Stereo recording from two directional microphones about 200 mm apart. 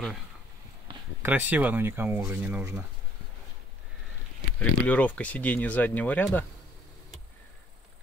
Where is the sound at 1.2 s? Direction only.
10° right (ahead or behind).